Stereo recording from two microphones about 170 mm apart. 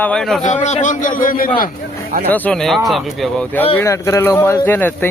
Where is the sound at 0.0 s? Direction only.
5° left (ahead or behind).